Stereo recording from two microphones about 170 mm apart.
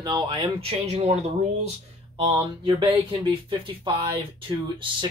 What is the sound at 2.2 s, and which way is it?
A man's voice, 30° right (ahead or behind).